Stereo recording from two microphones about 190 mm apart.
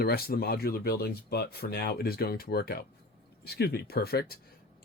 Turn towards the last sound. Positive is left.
turn(degrees=55)  # may be behind; listen again after turning